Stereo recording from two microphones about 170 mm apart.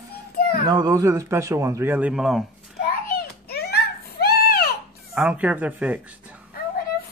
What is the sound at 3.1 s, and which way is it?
Baby cry, 65° left (ahead or behind).